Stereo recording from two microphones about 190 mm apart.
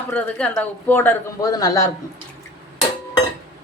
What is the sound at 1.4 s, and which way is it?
Speech, 20° left (ahead or behind).